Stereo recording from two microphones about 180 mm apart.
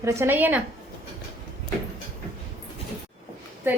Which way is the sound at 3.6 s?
10° right (ahead or behind).